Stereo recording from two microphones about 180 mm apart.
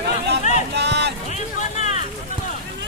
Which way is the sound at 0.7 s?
70° right (ahead or behind).